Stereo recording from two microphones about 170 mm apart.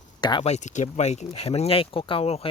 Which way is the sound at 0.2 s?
25° left (ahead or behind).